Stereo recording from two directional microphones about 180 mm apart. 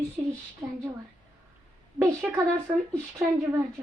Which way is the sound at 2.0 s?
20° right (ahead or behind).